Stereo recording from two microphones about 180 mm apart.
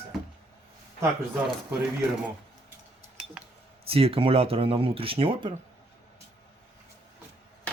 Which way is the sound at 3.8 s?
30° right (ahead or behind).